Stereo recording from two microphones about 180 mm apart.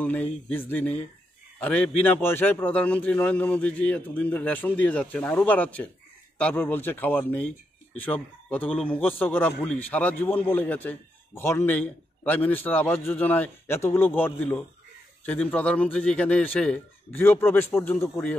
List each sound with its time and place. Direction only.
0.0 s a man's voice: 10° left (ahead or behind)